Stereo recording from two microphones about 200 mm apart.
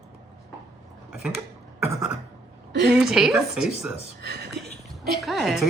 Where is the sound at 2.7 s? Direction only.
60° right (ahead or behind).